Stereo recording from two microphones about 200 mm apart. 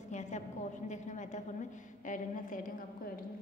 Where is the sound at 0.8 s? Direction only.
35° left (ahead or behind).